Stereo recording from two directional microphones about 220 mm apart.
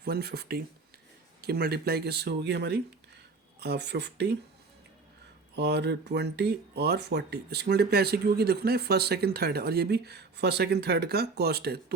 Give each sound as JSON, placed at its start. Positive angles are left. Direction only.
{"t": 0.0, "sound": "speech", "side_deg": -45}
{"t": 5.5, "sound": "speech", "side_deg": -50}